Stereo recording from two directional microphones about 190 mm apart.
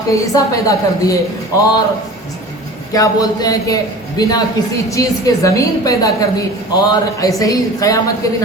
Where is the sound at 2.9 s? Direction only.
20° left (ahead or behind).